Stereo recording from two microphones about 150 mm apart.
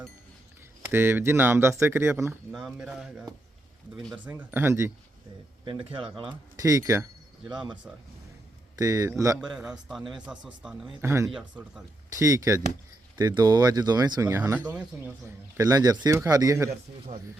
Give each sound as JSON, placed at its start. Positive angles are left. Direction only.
{"t": 0.9, "sound": "speech", "side_deg": -15}
{"t": 2.5, "sound": "a man's voice", "side_deg": 0}
{"t": 4.3, "sound": "speech", "side_deg": -15}
{"t": 5.6, "sound": "speech", "side_deg": -35}
{"t": 6.6, "sound": "speech", "side_deg": -20}
{"t": 7.5, "sound": "speech", "side_deg": -30}
{"t": 8.8, "sound": "speech", "side_deg": -20}
{"t": 9.4, "sound": "a man's voice", "side_deg": -5}
{"t": 11.0, "sound": "speech", "side_deg": -20}
{"t": 11.3, "sound": "a man's voice", "side_deg": -5}
{"t": 12.1, "sound": "speech", "side_deg": -20}
{"t": 15.5, "sound": "speech", "side_deg": -25}